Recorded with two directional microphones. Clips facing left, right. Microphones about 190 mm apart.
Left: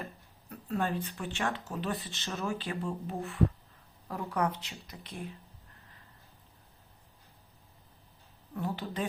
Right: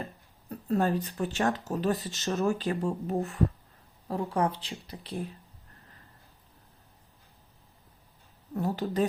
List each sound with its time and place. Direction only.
0.5 s speech: 40° right (ahead or behind)
4.1 s speech: 30° right (ahead or behind)
8.5 s speech: 40° right (ahead or behind)